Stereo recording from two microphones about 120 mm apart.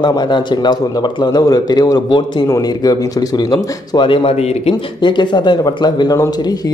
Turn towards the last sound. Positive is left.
turn(degrees=35)  # may be behind; listen again after turning